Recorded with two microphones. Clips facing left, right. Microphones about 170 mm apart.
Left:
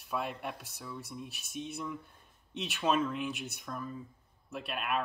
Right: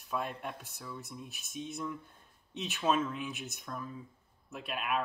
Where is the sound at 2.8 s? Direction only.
Centre (ahead or behind).